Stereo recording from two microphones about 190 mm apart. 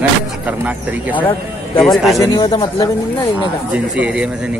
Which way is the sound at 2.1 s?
25° left (ahead or behind).